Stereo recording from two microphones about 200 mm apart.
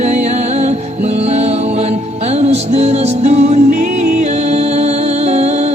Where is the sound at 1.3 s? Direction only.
35° right (ahead or behind).